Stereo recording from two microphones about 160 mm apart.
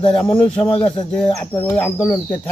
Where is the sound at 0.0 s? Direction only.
5° left (ahead or behind).